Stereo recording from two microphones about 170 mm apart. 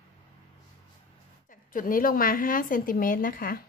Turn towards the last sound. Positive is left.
turn(degrees=55)  # may be behind; listen again after turning